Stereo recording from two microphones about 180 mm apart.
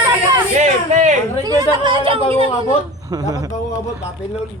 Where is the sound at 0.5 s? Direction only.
40° right (ahead or behind).